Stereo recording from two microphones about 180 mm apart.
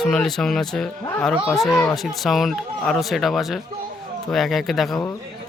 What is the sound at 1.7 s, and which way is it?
Speech, 15° left (ahead or behind).